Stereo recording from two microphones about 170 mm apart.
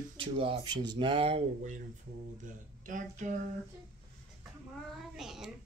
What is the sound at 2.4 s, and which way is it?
Speech, 45° right (ahead or behind).